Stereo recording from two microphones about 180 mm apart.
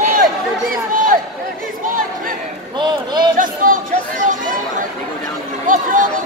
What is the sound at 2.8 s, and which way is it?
Run, 25° right (ahead or behind).